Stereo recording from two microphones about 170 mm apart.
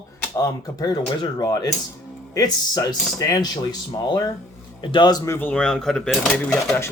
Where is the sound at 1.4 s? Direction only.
20° left (ahead or behind).